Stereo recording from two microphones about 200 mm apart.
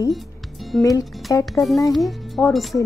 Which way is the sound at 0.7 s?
5° left (ahead or behind).